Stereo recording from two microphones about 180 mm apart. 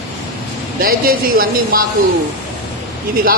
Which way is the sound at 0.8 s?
55° right (ahead or behind).